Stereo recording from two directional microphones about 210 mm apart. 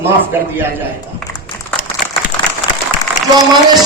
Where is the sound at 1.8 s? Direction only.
40° left (ahead or behind).